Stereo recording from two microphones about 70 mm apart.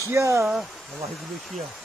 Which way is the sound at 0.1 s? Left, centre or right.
Right.